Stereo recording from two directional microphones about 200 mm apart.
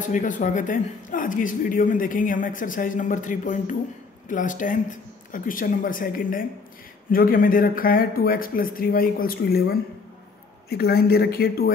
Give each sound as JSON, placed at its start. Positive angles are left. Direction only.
{"t": 0.0, "sound": "speech", "side_deg": 40}